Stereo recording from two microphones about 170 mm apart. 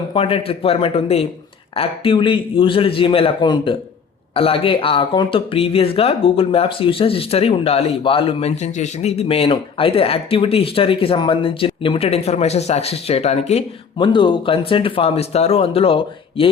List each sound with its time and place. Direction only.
0.1 s speech: 35° left (ahead or behind)